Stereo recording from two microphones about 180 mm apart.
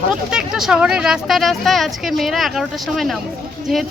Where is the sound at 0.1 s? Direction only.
5° right (ahead or behind).